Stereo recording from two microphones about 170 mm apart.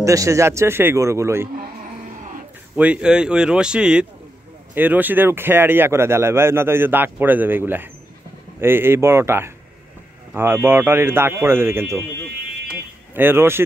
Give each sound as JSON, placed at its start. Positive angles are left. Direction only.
{"t": 0.0, "sound": "speech", "side_deg": -20}
{"t": 2.7, "sound": "speech", "side_deg": -5}
{"t": 13.1, "sound": "speech", "side_deg": -10}